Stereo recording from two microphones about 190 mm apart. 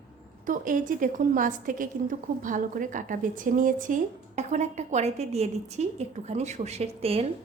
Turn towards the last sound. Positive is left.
turn(degrees=-35)  # may be behind; listen again after turning